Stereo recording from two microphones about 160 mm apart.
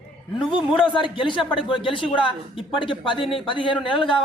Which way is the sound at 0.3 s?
30° left (ahead or behind).